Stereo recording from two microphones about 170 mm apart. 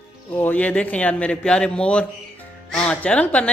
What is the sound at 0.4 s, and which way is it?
Speech, 10° left (ahead or behind).